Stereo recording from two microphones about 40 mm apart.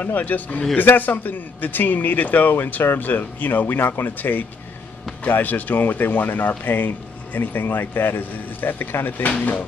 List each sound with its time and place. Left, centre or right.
0.0 s speech: left